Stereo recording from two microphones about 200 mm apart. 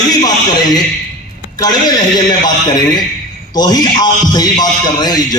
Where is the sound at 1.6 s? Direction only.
20° left (ahead or behind).